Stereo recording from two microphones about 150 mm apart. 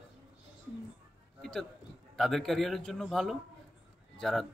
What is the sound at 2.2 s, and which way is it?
Speech, centre (ahead or behind).